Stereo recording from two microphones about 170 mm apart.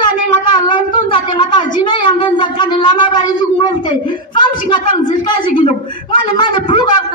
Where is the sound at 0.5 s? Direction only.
25° left (ahead or behind).